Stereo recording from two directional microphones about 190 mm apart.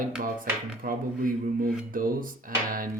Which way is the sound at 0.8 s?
50° right (ahead or behind).